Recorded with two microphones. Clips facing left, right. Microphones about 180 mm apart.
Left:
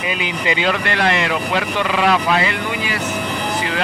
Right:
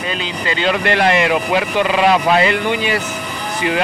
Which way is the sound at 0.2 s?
15° left (ahead or behind).